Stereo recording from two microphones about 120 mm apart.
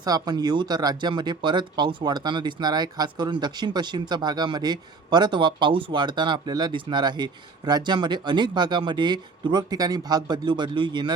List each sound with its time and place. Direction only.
0.0 s speech: 35° right (ahead or behind)